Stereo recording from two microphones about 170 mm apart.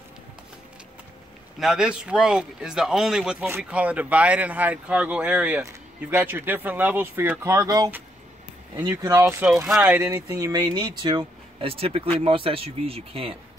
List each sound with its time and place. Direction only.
1.6 s speech: 5° right (ahead or behind)
9.7 s speech: 5° right (ahead or behind); by 13.4 s 35° right (ahead or behind)